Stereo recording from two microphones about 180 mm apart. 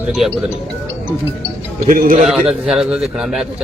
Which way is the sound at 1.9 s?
50° right (ahead or behind).